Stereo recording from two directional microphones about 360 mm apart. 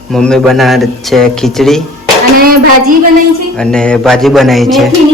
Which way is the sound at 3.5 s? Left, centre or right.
Centre.